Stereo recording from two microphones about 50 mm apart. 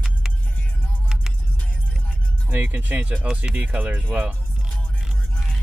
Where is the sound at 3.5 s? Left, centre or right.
Right.